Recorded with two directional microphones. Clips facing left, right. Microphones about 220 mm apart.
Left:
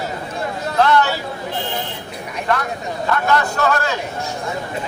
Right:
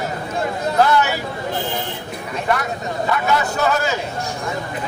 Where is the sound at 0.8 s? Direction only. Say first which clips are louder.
Left 1 dB; 5° right (ahead or behind).